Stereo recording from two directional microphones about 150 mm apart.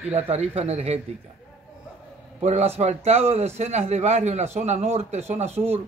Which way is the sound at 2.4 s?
45° right (ahead or behind).